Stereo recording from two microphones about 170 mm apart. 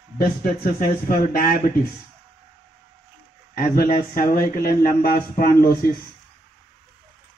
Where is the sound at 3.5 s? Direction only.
55° left (ahead or behind).